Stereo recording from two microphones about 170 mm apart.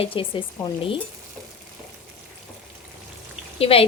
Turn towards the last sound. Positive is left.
turn(degrees=35)  # may be behind; listen again after turning